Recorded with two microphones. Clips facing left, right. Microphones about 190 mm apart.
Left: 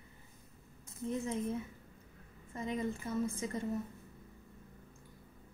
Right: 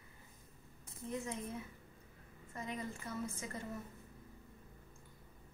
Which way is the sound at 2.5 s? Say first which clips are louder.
Left 7 dB; 25° left (ahead or behind).